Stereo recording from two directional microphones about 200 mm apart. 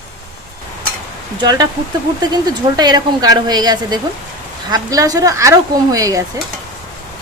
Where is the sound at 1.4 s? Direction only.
20° right (ahead or behind).